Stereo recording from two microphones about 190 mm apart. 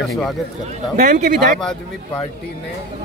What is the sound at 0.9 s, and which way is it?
Speech, 40° right (ahead or behind).